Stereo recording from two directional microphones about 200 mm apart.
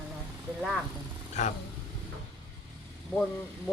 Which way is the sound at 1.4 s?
35° left (ahead or behind).